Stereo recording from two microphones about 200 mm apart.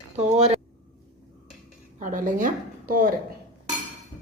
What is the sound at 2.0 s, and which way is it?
A woman's voice, 40° right (ahead or behind).